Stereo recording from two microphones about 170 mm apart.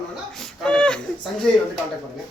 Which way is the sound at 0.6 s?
5° left (ahead or behind).